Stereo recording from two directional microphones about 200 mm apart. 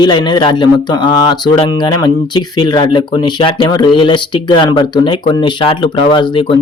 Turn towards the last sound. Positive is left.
turn(degrees=25)  # may be behind; listen again after turning